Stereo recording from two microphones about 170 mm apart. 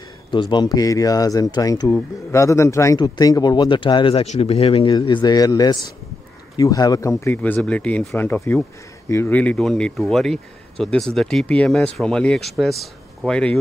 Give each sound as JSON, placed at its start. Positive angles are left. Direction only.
{"t": 0.3, "sound": "a man's voice", "side_deg": 25}